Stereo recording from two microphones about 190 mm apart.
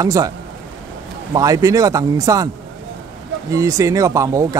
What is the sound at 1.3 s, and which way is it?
A man's voice, 20° right (ahead or behind).